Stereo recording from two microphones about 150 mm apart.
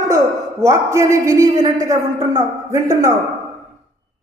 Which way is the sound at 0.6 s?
20° right (ahead or behind).